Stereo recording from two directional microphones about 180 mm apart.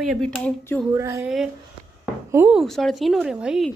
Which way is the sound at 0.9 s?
15° right (ahead or behind).